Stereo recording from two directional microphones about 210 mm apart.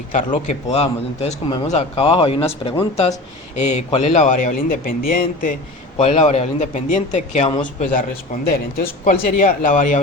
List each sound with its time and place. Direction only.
0.4 s a man's voice: 30° left (ahead or behind)
6.0 s a man's voice: 30° left (ahead or behind)
7.8 s a man's voice: 40° left (ahead or behind)